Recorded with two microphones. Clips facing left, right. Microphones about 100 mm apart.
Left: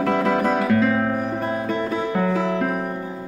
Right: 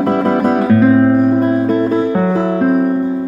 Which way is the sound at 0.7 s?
30° right (ahead or behind).